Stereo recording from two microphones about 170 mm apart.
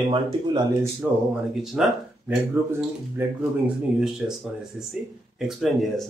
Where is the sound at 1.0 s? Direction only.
5° right (ahead or behind).